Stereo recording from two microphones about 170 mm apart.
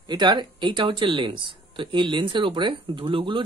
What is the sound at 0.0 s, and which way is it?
Speech, 25° right (ahead or behind).